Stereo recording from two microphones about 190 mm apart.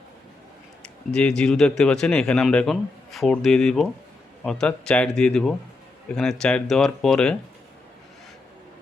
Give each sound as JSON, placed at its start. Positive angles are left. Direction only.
{"t": 1.1, "sound": "a man's voice", "side_deg": 5}